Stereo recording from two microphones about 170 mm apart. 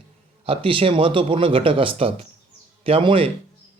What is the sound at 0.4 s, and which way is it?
Speech, 35° right (ahead or behind).